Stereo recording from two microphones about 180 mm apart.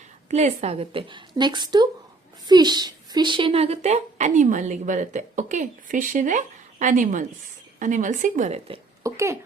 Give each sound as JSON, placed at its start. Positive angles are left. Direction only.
{"t": 0.3, "sound": "a woman's voice", "side_deg": -40}
{"t": 9.0, "sound": "speech", "side_deg": -15}